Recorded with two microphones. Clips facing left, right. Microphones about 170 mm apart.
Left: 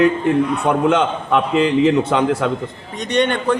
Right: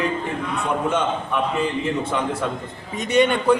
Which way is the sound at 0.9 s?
85° left.